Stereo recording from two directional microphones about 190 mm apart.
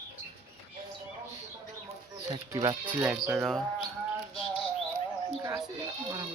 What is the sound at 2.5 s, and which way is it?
Speech, 25° right (ahead or behind).